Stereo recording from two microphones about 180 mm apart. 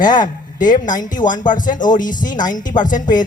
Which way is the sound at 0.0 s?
45° left (ahead or behind).